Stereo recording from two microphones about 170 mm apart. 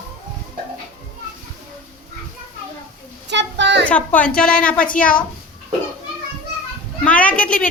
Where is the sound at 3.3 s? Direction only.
90° right.